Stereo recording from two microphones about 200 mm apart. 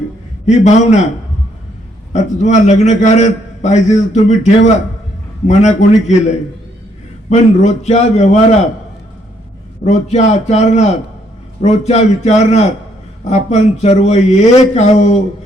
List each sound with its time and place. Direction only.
0.4 s a man's voice: 35° left (ahead or behind)
2.1 s a man's voice: 35° left (ahead or behind)
7.3 s a man's voice: 35° left (ahead or behind)
9.8 s a man's voice: 35° left (ahead or behind)